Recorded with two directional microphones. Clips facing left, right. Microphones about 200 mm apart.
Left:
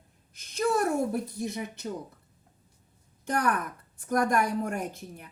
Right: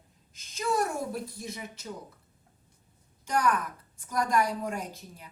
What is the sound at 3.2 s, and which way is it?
A woman's voice, 60° left (ahead or behind).